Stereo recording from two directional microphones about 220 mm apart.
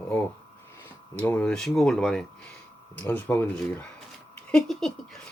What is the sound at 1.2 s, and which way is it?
Speech, 5° left (ahead or behind).